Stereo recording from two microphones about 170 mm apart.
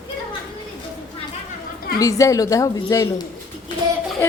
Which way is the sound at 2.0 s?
20° left (ahead or behind).